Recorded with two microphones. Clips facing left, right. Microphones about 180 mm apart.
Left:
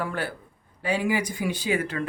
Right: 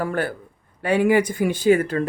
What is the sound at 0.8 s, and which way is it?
Speech, 60° right (ahead or behind).